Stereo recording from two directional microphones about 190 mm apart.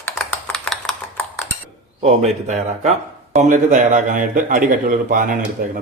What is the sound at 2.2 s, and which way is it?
A man's voice, 40° right (ahead or behind).